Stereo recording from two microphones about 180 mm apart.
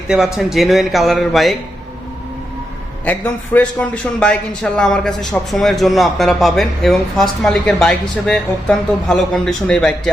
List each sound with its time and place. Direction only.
0.1 s a man's voice: centre (ahead or behind)
3.0 s a man's voice: 10° left (ahead or behind)